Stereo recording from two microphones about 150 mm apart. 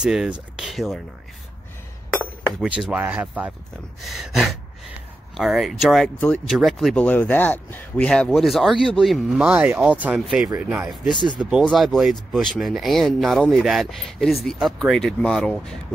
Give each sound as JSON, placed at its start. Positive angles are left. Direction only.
{"t": 0.0, "sound": "speech", "side_deg": -5}
{"t": 2.6, "sound": "speech", "side_deg": -5}
{"t": 11.1, "sound": "speech", "side_deg": -35}
{"t": 11.6, "sound": "speech", "side_deg": 0}